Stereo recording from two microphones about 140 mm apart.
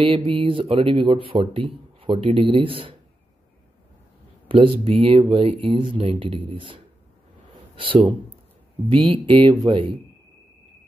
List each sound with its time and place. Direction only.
0.0 s speech: 40° right (ahead or behind)
4.5 s speech: 40° right (ahead or behind)